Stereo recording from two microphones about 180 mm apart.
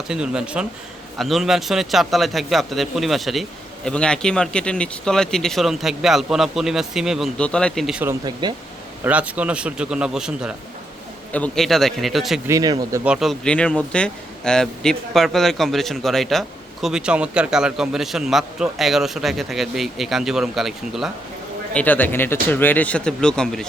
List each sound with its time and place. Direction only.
0.1 s a man's voice: 5° right (ahead or behind)
8.2 s speech: 25° right (ahead or behind)
9.0 s a man's voice: 5° right (ahead or behind)
11.3 s a man's voice: 5° left (ahead or behind)
12.5 s speech: 20° right (ahead or behind)
13.1 s a man's voice: centre (ahead or behind)